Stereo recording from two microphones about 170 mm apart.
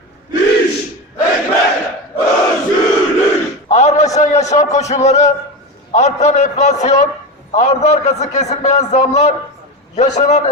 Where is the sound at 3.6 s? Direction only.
40° left (ahead or behind).